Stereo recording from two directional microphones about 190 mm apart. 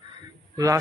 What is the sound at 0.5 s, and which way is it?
Speech, 15° right (ahead or behind).